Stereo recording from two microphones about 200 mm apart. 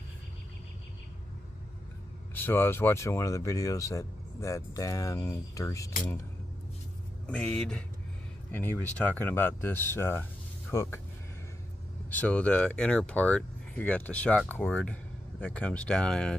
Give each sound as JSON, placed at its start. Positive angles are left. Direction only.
{"t": 2.3, "sound": "speech", "side_deg": 10}
{"t": 7.2, "sound": "speech", "side_deg": 5}
{"t": 12.1, "sound": "speech", "side_deg": 5}